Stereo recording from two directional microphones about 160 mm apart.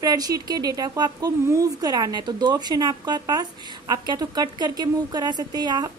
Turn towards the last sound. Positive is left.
turn(degrees=-25)  # may be behind; listen again after turning